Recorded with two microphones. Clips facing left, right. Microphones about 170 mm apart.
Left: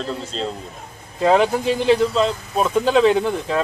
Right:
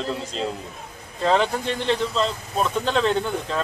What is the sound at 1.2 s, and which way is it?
Speech, 5° left (ahead or behind).